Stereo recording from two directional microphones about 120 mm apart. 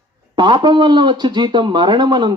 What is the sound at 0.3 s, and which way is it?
Speech, 40° right (ahead or behind).